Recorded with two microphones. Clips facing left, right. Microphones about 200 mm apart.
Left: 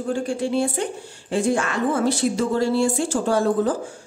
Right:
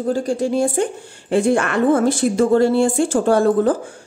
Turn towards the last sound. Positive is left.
turn(degrees=-55)  # may be behind; listen again after turning